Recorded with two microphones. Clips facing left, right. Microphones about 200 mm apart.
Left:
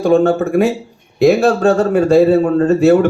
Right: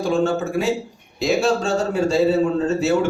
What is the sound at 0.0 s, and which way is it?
A man's voice, 60° left (ahead or behind).